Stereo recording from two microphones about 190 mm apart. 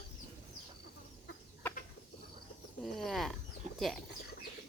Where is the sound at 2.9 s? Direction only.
Centre (ahead or behind).